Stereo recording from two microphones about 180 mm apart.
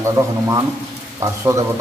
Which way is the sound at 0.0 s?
15° right (ahead or behind).